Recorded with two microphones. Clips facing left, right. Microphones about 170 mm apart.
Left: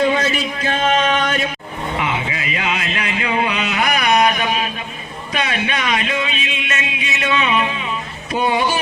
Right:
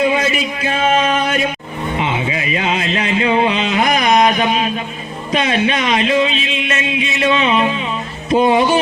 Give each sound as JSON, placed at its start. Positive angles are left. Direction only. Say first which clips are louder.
{"t": 0.0, "sound": "speech", "louder": "right 1 dB", "side_deg": -5}
{"t": 2.0, "sound": "a sound", "louder": "right 3 dB", "side_deg": -25}
{"t": 5.3, "sound": "speech", "louder": "right 6 dB", "side_deg": -25}